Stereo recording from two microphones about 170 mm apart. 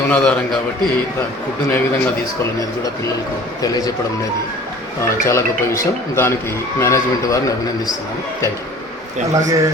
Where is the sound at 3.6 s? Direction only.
20° left (ahead or behind).